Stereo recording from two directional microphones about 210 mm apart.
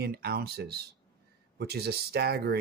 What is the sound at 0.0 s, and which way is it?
Speech, 50° right (ahead or behind).